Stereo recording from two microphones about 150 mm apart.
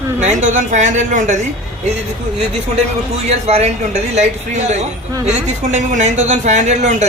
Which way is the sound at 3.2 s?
45° right (ahead or behind).